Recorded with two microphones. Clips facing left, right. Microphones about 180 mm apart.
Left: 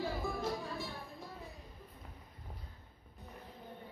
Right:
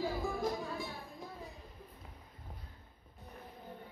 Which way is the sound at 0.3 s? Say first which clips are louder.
Right 2 dB; 15° right (ahead or behind).